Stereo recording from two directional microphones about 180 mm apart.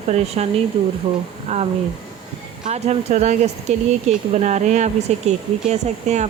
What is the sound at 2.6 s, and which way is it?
Speech, 40° right (ahead or behind).